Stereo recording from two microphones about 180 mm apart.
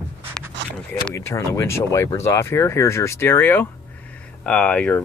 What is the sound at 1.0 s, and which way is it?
Speech, 15° left (ahead or behind).